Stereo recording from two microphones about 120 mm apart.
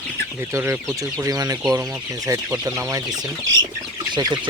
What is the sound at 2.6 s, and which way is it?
Speech, 25° right (ahead or behind).